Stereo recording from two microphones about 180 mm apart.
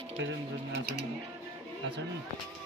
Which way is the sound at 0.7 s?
70° right (ahead or behind).